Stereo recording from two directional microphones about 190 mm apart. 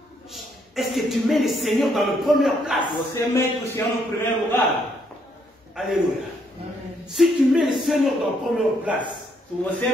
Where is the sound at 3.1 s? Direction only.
15° left (ahead or behind).